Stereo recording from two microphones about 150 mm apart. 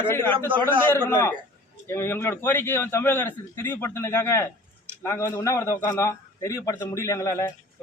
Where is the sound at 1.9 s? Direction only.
15° left (ahead or behind).